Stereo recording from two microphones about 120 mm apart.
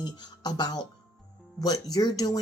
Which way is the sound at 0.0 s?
35° left (ahead or behind).